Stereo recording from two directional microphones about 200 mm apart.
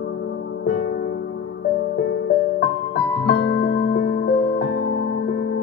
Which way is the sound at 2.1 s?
55° left (ahead or behind).